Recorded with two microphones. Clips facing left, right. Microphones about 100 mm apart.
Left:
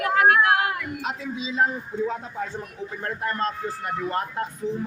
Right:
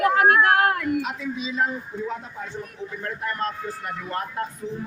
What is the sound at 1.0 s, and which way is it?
Speech, 30° left (ahead or behind).